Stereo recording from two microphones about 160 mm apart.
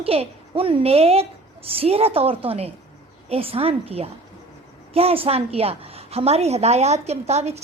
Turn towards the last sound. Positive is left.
turn(degrees=-40)  # may be behind; listen again after turning